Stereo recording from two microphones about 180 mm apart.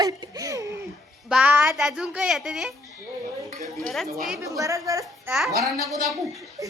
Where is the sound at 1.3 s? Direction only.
10° right (ahead or behind).